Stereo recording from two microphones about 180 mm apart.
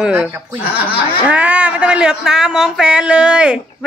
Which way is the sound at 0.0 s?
10° right (ahead or behind).